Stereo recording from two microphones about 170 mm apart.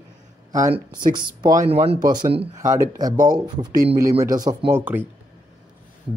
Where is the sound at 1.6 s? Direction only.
35° right (ahead or behind).